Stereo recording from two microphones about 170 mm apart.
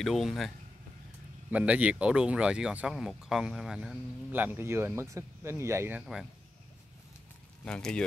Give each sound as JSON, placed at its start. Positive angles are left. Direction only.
{"t": 0.0, "sound": "speech", "side_deg": 0}
{"t": 1.5, "sound": "speech", "side_deg": -10}
{"t": 7.6, "sound": "speech", "side_deg": 5}